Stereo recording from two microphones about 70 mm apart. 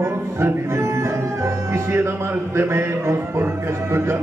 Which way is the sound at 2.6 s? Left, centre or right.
Right.